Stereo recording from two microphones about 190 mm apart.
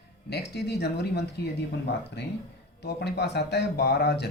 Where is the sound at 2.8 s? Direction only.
60° left (ahead or behind).